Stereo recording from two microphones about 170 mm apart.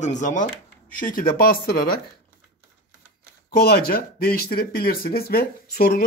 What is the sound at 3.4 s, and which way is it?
Speech, 65° left (ahead or behind).